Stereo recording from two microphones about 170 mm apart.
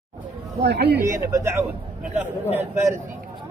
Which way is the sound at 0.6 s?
80° right.